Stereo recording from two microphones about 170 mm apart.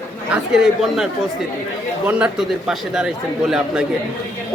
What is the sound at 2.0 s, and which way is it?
Speech, 5° right (ahead or behind).